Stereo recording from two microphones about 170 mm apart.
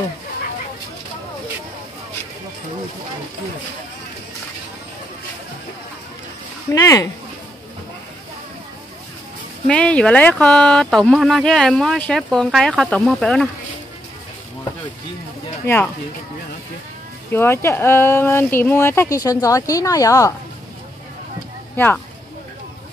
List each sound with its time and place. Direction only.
6.7 s speech: 20° left (ahead or behind)
9.7 s speech: 5° left (ahead or behind)
15.6 s speech: 10° left (ahead or behind)
17.3 s speech: 15° left (ahead or behind)
21.7 s speech: 10° left (ahead or behind)